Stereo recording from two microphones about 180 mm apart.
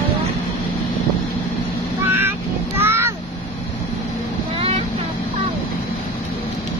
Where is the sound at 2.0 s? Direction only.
10° right (ahead or behind).